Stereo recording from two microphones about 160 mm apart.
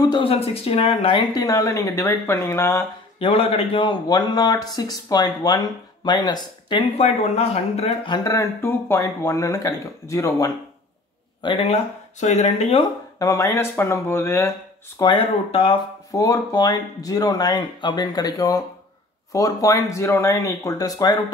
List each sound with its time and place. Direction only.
0.0 s speech: 30° left (ahead or behind); by 2.9 s 15° left (ahead or behind)
3.2 s speech: 35° left (ahead or behind)
7.1 s speech: 40° left (ahead or behind)
8.1 s speech: 20° left (ahead or behind)
11.4 s speech: 35° left (ahead or behind)
13.2 s speech: 20° left (ahead or behind)
15.0 s speech: 30° left (ahead or behind)
16.1 s speech: 25° left (ahead or behind)